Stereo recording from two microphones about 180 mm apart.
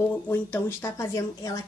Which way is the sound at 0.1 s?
10° left (ahead or behind).